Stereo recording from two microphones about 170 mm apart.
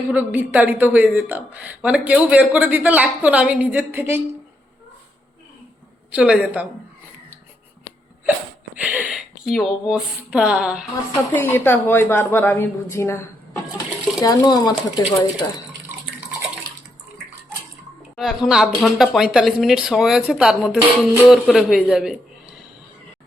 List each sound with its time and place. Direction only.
0.1 s a woman's voice: 10° right (ahead or behind)
6.1 s a woman's voice: 5° right (ahead or behind)
8.7 s speech: 10° right (ahead or behind)
11.1 s a woman's voice: 15° left (ahead or behind)
18.2 s speech: centre (ahead or behind)